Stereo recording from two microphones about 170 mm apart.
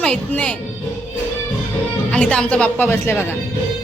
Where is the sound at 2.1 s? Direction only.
5° left (ahead or behind).